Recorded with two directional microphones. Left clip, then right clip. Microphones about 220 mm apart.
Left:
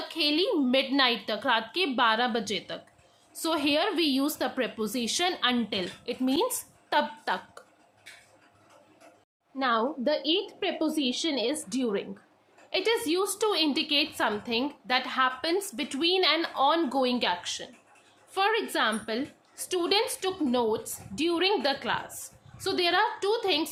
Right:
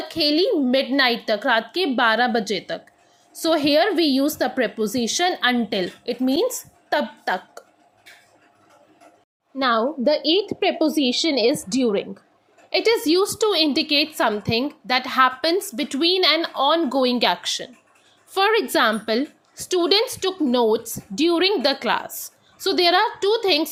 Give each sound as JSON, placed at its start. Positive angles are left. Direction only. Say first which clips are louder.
{"t": 0.1, "sound": "a woman's voice", "louder": "right 7 dB", "side_deg": -15}
{"t": 9.6, "sound": "a woman's voice", "louder": "right 7 dB", "side_deg": -25}